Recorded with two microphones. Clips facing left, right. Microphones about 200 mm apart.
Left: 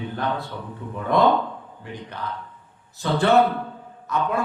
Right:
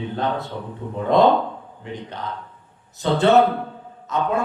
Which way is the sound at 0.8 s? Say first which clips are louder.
Right 3 dB; 25° right (ahead or behind).